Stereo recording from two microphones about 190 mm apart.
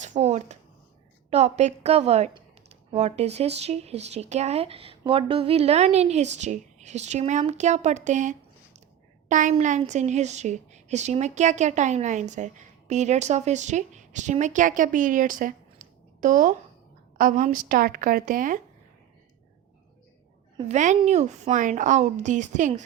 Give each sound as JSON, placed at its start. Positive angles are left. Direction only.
{"t": 0.0, "sound": "a sound", "side_deg": -35}
{"t": 1.3, "sound": "a woman's voice", "side_deg": -35}
{"t": 20.6, "sound": "speech", "side_deg": -35}